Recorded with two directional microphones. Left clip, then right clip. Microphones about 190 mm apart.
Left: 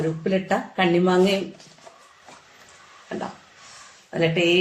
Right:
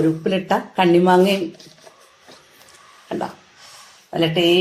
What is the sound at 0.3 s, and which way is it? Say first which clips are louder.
Speech: right 3 dB; 40° right (ahead or behind).